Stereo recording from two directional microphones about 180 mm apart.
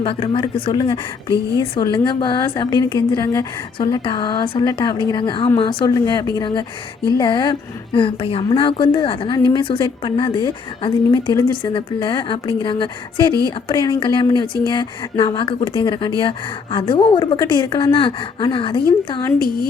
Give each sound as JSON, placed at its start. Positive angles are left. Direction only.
{"t": 0.0, "sound": "a woman's voice", "side_deg": 30}
{"t": 19.4, "sound": "speech", "side_deg": 55}